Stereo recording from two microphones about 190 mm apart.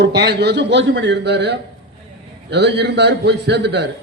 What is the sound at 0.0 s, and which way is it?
A man's voice, 60° right (ahead or behind).